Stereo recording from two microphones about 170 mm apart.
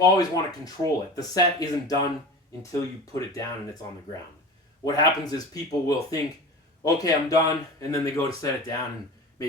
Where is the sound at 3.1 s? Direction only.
20° left (ahead or behind).